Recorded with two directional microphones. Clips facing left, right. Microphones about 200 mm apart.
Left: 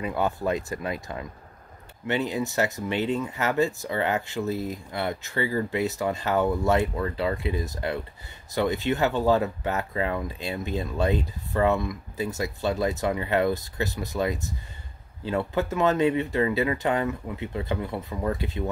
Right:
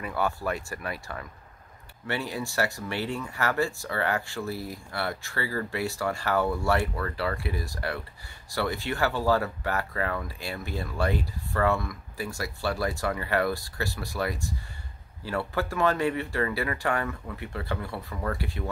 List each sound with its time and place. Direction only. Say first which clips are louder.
0.0 s speech: left 3 dB; 20° left (ahead or behind)